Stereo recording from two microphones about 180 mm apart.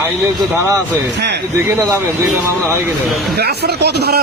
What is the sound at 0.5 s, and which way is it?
Speech, 15° right (ahead or behind).